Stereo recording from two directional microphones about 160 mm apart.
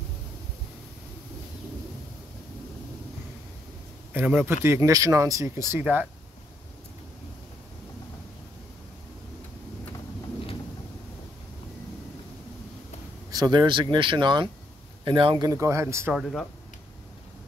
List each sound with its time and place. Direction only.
4.1 s a man's voice: 10° right (ahead or behind)
13.3 s speech: 25° right (ahead or behind)
16.1 s speech: centre (ahead or behind)